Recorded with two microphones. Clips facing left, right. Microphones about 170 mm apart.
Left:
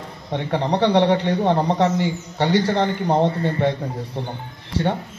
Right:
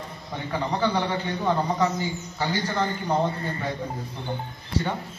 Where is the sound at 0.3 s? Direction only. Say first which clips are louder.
Left 7 dB; 70° left (ahead or behind).